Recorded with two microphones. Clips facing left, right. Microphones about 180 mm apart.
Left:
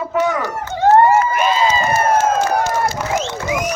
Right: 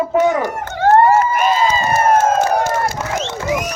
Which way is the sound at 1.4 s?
45° right (ahead or behind).